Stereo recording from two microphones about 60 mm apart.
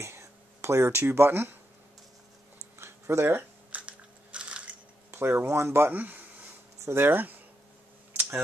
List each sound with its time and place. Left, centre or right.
0.0 s speech: right
2.8 s a sound: right
3.3 s biting: right
5.1 s speech: right
6.8 s speech: right